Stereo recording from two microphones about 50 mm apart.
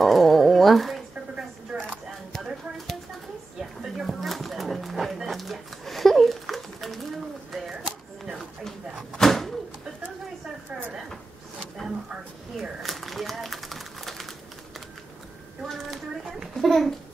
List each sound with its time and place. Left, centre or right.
0.0 s dog: centre
1.7 s a sound: centre
4.1 s music: centre
7.5 s a sound: centre
9.1 s door: centre
12.5 s crumpling: centre
16.6 s babbling: centre